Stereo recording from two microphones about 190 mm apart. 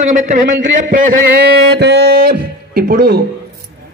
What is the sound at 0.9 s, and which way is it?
Music, 60° right (ahead or behind).